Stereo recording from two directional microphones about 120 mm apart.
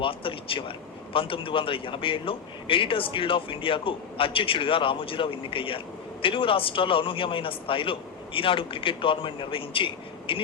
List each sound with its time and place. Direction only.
0.0 s a man's voice: 50° left (ahead or behind)